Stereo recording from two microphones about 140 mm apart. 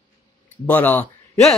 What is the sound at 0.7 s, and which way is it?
Speech, 10° left (ahead or behind).